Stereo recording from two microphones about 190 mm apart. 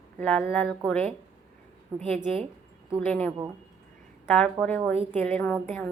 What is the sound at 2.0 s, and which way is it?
Speech, 30° right (ahead or behind).